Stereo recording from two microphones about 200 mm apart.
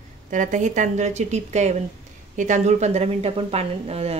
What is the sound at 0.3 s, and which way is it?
Speech, 40° right (ahead or behind).